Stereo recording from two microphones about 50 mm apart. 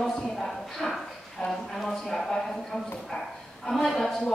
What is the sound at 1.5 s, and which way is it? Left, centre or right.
Speech, centre.